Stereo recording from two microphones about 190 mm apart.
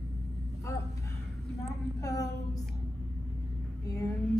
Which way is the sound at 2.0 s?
15° left (ahead or behind).